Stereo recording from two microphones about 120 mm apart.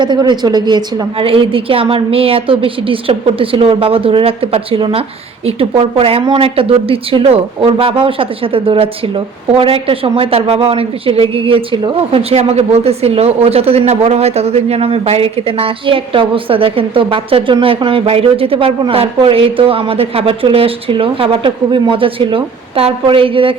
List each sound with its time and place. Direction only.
0.0 s a woman's voice: 40° right (ahead or behind)
1.2 s a woman's voice: 50° right (ahead or behind)